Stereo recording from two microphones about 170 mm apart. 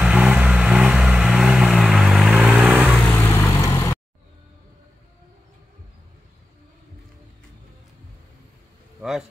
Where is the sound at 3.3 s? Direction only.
20° left (ahead or behind).